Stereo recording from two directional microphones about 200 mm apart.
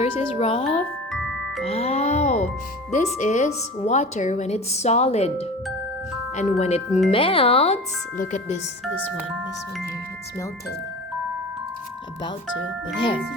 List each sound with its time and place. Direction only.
0.0 s a woman's voice: 30° left (ahead or behind)
1.1 s glockenspiel: centre (ahead or behind)
1.6 s music: 30° left (ahead or behind)
3.2 s a woman's voice: 35° left (ahead or behind)